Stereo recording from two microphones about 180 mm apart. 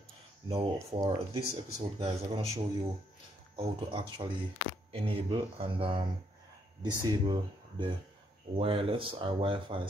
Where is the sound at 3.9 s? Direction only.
25° right (ahead or behind).